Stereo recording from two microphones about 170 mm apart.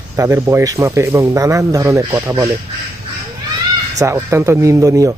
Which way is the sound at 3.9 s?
15° right (ahead or behind).